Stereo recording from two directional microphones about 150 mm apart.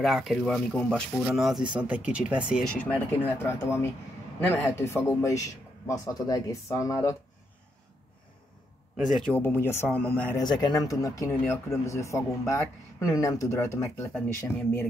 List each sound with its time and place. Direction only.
0.0 s speech: centre (ahead or behind)
2.7 s speech: 10° left (ahead or behind)
8.9 s a man's voice: centre (ahead or behind)
9.3 s speech: 15° left (ahead or behind)
10.4 s speech: 30° left (ahead or behind)